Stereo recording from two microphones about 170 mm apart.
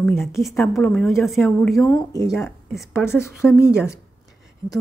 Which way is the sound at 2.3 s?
Centre (ahead or behind).